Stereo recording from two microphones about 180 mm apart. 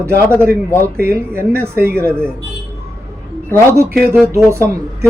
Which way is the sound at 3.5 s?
15° right (ahead or behind).